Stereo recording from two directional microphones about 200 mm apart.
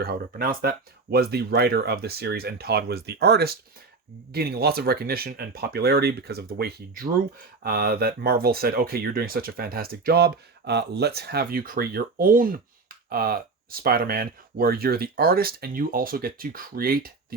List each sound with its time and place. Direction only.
0.0 s speech: 50° right (ahead or behind)